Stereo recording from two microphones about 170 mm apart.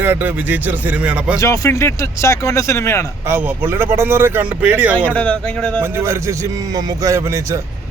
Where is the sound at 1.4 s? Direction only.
20° left (ahead or behind).